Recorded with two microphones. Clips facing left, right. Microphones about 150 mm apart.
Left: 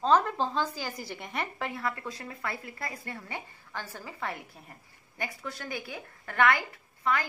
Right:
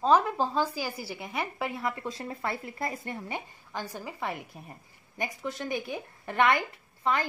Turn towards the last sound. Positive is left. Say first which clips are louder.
# right 1 dB
turn(degrees=-25)  # may be behind; listen again after turning